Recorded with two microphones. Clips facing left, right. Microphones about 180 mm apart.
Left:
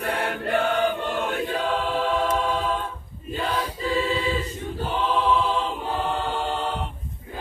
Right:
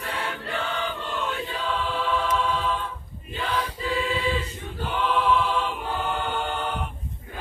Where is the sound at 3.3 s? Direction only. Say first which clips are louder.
Left 2 dB; 40° left (ahead or behind).